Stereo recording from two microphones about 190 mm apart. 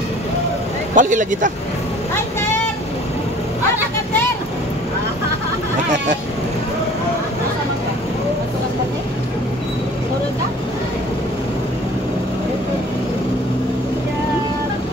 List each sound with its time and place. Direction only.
0.9 s speech: 45° right (ahead or behind)